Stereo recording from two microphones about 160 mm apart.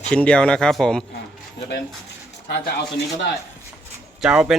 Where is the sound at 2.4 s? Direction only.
90° left.